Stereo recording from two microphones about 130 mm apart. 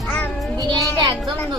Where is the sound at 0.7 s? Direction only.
30° right (ahead or behind).